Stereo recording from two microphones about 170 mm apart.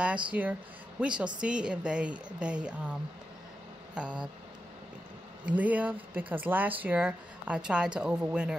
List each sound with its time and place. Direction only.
0.0 s speech: 5° right (ahead or behind)
3.9 s a sound: 5° right (ahead or behind)
5.4 s speech: 10° right (ahead or behind)